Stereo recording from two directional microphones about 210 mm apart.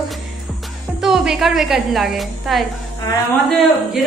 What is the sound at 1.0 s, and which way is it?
A woman's voice, centre (ahead or behind).